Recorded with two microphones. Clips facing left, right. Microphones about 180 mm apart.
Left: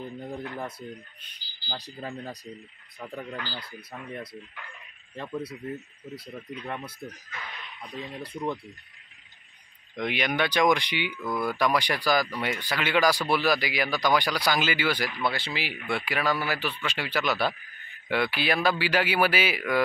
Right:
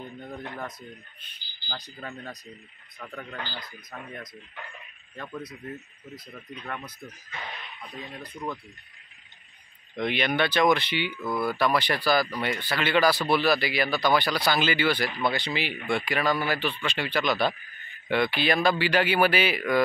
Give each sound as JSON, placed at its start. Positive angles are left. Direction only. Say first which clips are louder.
{"t": 0.0, "sound": "radio", "louder": "left 3 dB", "side_deg": 30}
{"t": 0.6, "sound": "speech", "louder": "left 2 dB", "side_deg": 30}
{"t": 7.3, "sound": "speech", "louder": "right 2 dB", "side_deg": -30}
{"t": 9.9, "sound": "speech", "louder": "right 2 dB", "side_deg": 10}
{"t": 11.1, "sound": "speech", "louder": "right 1 dB", "side_deg": -5}
{"t": 11.5, "sound": "speech", "louder": "even", "side_deg": 15}